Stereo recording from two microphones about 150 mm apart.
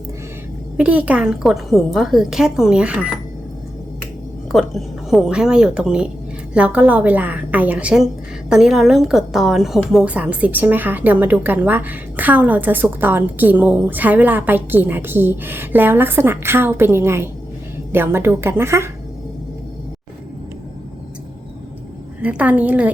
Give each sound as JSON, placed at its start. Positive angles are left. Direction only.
{"t": 0.8, "sound": "a woman's voice", "side_deg": -10}
{"t": 4.5, "sound": "a woman's voice", "side_deg": 0}
{"t": 22.2, "sound": "a woman's voice", "side_deg": -10}